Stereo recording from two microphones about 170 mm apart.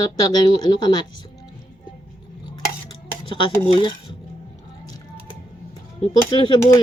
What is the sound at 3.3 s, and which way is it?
Speech, 30° left (ahead or behind).